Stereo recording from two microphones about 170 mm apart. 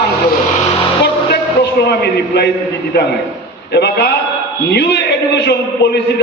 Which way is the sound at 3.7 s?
75° left (ahead or behind).